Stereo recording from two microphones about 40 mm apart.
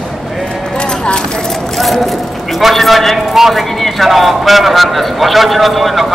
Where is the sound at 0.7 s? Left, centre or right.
Left.